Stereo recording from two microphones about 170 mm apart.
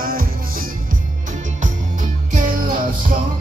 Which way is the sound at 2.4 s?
50° right (ahead or behind).